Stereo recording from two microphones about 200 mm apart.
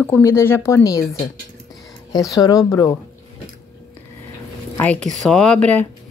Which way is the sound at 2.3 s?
15° left (ahead or behind).